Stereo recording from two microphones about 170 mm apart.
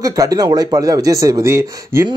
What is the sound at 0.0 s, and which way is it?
Speech, 20° right (ahead or behind).